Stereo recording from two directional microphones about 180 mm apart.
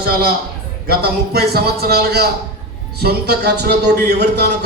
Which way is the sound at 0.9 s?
60° right (ahead or behind).